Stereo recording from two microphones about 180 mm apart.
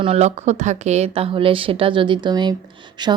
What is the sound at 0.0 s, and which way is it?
A woman's voice, 35° right (ahead or behind).